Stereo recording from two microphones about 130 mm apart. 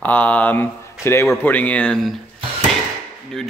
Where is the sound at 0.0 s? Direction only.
10° left (ahead or behind).